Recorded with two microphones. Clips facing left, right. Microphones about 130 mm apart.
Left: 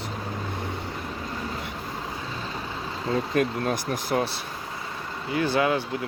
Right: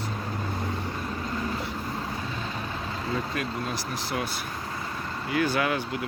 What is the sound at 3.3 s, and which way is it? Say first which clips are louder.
Speech: left 7 dB; 50° left (ahead or behind).